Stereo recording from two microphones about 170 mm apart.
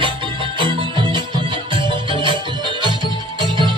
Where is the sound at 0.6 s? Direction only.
30° right (ahead or behind).